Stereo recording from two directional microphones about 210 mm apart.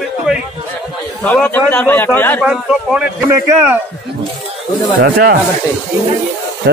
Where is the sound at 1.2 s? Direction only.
10° left (ahead or behind).